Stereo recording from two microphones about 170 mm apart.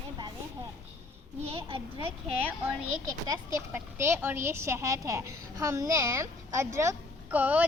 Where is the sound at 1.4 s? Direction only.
30° right (ahead or behind).